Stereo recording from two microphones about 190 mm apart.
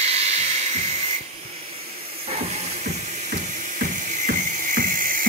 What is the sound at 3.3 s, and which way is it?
Music, 45° right (ahead or behind).